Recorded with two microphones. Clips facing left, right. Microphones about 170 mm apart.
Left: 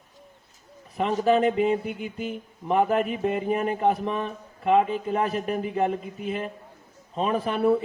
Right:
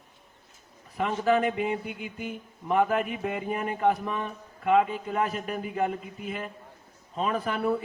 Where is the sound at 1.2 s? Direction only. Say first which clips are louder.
Left 4 dB; 25° left (ahead or behind).